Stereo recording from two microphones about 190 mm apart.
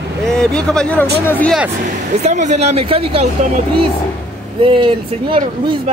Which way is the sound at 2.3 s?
35° right (ahead or behind).